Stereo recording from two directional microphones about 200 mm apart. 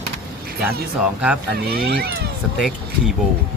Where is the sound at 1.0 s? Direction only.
5° right (ahead or behind).